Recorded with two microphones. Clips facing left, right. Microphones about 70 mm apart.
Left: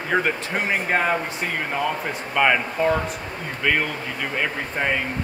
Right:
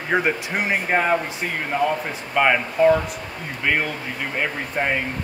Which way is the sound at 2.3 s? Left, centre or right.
Centre.